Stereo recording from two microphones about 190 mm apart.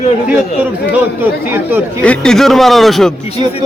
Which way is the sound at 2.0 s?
5° left (ahead or behind).